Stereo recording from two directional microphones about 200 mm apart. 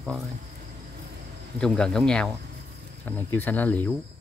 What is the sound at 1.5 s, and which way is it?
Speech, 5° left (ahead or behind).